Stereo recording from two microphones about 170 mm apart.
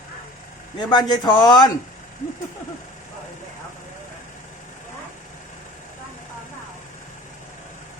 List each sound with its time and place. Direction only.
0.8 s a man's voice: 25° left (ahead or behind)